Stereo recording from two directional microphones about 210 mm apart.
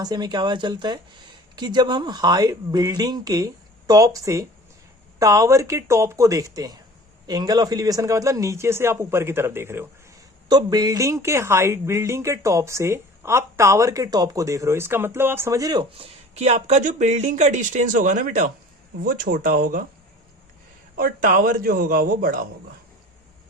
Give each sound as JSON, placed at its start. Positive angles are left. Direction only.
{"t": 0.0, "sound": "speech", "side_deg": -20}
{"t": 20.9, "sound": "speech", "side_deg": -40}